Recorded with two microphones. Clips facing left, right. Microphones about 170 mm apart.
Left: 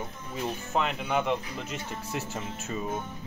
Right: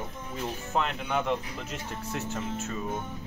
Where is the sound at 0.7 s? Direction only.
5° left (ahead or behind).